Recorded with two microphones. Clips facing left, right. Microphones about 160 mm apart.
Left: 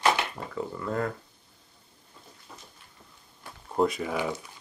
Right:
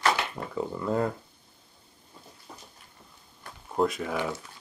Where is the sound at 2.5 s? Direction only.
35° right (ahead or behind).